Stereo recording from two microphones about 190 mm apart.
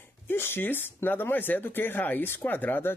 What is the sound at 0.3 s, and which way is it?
Speech, 10° left (ahead or behind).